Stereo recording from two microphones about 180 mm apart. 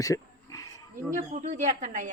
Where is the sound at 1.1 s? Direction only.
45° right (ahead or behind).